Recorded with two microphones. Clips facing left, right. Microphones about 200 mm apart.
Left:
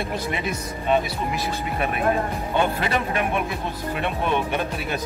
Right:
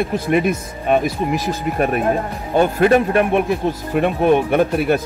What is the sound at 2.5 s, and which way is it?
Speech, 45° right (ahead or behind).